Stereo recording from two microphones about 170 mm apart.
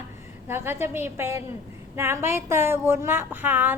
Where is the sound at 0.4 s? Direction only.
15° right (ahead or behind).